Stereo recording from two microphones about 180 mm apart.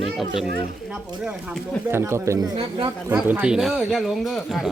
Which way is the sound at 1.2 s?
5° right (ahead or behind).